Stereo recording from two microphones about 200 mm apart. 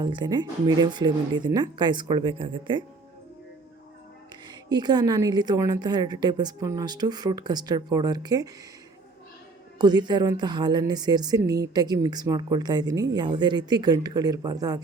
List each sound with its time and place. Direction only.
0.0 s a woman's voice: 20° right (ahead or behind)
4.7 s a woman's voice: 20° right (ahead or behind)
9.7 s a woman's voice: 20° right (ahead or behind)